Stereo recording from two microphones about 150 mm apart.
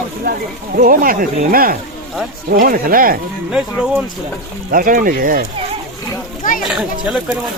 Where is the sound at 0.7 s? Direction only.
70° right (ahead or behind).